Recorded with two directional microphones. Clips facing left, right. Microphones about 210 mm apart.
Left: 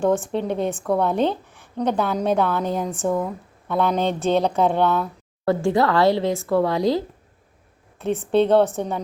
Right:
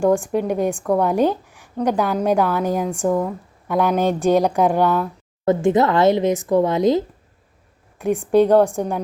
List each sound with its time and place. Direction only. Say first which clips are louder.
0.2 s a woman's voice: right 3 dB; 10° right (ahead or behind)
5.5 s a woman's voice: right 3 dB; 20° right (ahead or behind)